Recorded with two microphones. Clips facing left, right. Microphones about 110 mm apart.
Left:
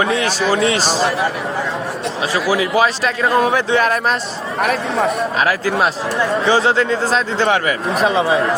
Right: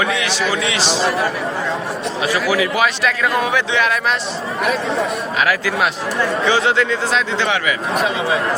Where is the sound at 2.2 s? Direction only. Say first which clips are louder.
Even; 30° left (ahead or behind).